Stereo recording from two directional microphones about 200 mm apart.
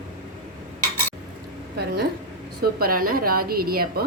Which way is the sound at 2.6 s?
50° right (ahead or behind).